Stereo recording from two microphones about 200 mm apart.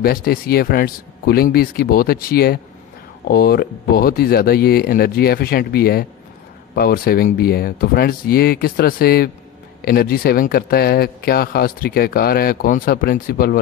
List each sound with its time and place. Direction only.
0.0 s speech: 50° left (ahead or behind)